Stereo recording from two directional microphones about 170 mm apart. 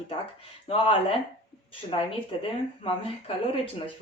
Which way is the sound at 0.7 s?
35° left (ahead or behind).